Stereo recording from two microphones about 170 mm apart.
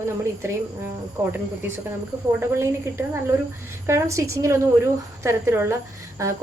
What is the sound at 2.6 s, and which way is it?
A woman's voice, 15° right (ahead or behind).